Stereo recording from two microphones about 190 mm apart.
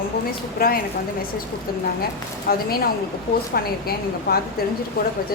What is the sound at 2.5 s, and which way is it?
Speech, 50° left (ahead or behind).